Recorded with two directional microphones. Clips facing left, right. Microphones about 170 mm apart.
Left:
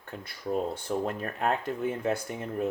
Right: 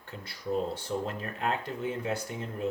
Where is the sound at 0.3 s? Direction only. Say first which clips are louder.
Left 1 dB; 55° left (ahead or behind).